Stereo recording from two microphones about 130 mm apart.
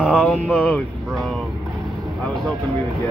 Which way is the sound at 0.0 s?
5° left (ahead or behind).